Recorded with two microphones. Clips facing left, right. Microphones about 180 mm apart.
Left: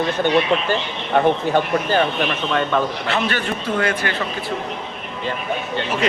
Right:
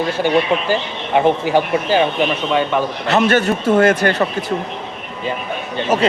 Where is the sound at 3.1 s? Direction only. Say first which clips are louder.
Right 7 dB; 45° right (ahead or behind).